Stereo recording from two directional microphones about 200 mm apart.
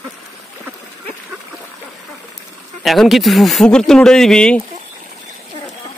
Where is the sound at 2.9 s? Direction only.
Centre (ahead or behind).